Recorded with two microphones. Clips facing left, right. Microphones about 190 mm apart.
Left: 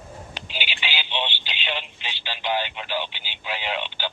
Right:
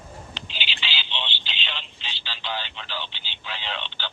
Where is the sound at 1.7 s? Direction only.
50° left (ahead or behind).